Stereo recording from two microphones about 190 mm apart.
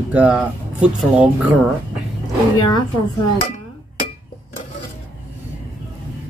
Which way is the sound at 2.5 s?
20° left (ahead or behind).